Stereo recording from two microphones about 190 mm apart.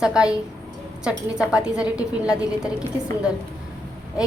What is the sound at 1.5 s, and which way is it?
A woman's voice, 5° right (ahead or behind).